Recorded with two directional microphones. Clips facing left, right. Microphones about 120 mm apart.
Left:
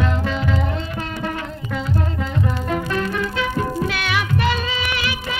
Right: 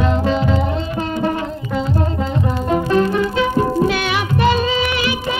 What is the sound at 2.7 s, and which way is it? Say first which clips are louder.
Music: right 7 dB; 25° right (ahead or behind).